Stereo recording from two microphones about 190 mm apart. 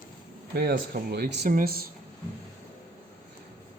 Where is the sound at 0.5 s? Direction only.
55° right (ahead or behind).